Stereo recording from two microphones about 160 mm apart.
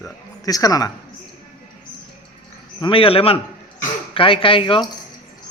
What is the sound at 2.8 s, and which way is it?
Speech, 35° left (ahead or behind).